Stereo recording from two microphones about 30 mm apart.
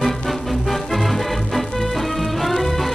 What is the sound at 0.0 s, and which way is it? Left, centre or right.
Music, centre.